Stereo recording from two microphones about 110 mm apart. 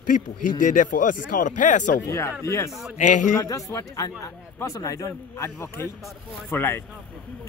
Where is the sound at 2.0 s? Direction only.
25° left (ahead or behind).